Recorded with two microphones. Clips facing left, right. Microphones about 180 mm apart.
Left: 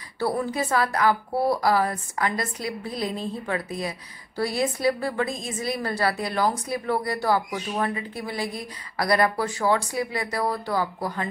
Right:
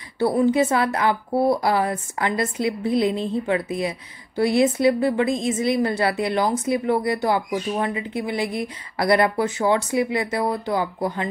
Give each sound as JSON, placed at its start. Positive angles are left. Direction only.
{"t": 0.2, "sound": "a woman's voice", "side_deg": -25}